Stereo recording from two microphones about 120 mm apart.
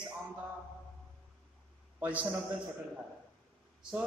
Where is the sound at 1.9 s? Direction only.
15° right (ahead or behind).